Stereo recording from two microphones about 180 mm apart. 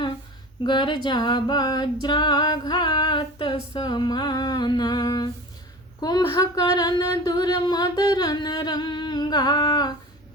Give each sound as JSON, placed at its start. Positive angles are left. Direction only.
{"t": 0.6, "sound": "a capella", "side_deg": 25}